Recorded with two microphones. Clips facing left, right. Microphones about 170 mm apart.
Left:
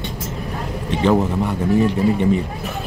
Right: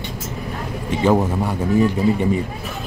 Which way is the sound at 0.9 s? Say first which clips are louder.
Even; 5° right (ahead or behind).